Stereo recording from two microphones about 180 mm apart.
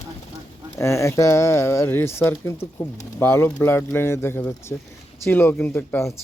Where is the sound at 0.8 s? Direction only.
15° left (ahead or behind).